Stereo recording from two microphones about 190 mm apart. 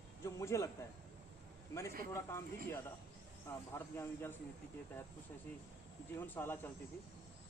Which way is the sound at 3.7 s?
10° left (ahead or behind).